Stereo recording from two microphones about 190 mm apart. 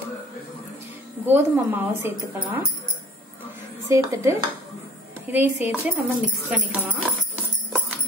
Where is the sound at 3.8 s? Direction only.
15° right (ahead or behind).